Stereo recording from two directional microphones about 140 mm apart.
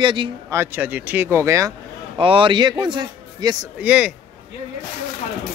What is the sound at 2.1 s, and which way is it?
A man's voice, 40° right (ahead or behind).